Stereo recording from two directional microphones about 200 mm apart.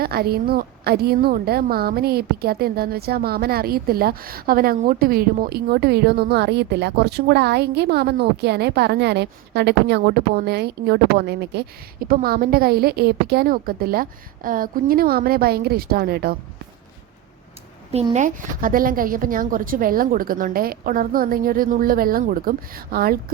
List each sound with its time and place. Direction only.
0.0 s a woman's voice: 50° right (ahead or behind)
17.9 s a woman's voice: 35° right (ahead or behind)